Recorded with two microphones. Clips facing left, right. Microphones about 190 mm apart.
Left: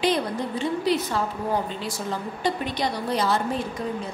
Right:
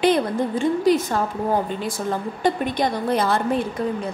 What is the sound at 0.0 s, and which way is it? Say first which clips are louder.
A woman's voice: right 5 dB; 50° right (ahead or behind).